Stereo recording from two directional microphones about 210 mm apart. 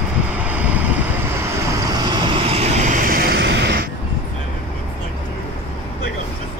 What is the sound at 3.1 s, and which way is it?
Vehicle, 50° right (ahead or behind).